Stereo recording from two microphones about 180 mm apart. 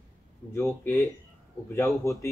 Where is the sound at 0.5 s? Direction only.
15° left (ahead or behind).